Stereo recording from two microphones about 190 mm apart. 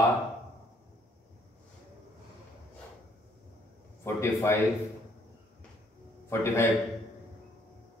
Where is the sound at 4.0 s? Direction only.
15° left (ahead or behind).